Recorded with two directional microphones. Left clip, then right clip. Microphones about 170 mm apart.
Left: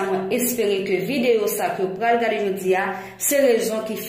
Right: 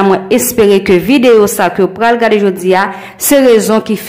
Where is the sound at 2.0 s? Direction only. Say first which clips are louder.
Right 10 dB; 25° right (ahead or behind).